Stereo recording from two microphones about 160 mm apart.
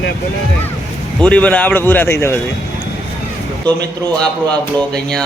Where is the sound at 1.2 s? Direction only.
10° left (ahead or behind).